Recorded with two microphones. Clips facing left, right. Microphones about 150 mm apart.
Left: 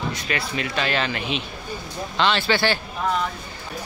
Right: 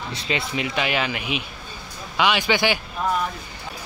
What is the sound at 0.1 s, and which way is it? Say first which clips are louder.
Speech: right 1 dB; 25° right (ahead or behind).